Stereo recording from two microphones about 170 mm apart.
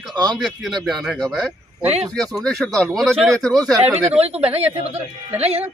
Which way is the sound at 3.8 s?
10° right (ahead or behind).